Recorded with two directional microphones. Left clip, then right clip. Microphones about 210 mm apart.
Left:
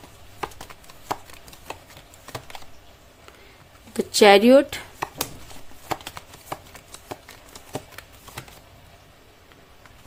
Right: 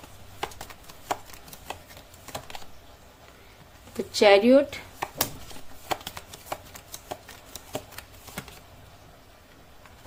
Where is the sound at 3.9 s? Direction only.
45° left (ahead or behind).